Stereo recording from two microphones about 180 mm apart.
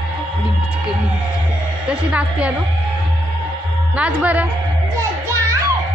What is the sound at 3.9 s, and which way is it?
Speech, 10° right (ahead or behind).